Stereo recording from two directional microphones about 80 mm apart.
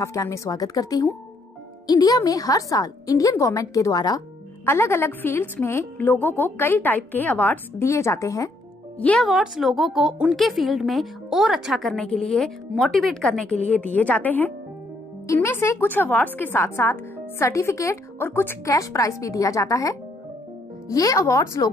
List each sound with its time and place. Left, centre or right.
0.0 s a woman's voice: left
4.6 s a woman's voice: left
7.8 s speech: left
9.4 s speech: centre
13.5 s a woman's voice: centre; by 18.3 s left
18.3 s a woman's voice: left
18.7 s a woman's voice: left